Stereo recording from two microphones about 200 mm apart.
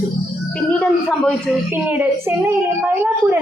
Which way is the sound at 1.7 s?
10° right (ahead or behind).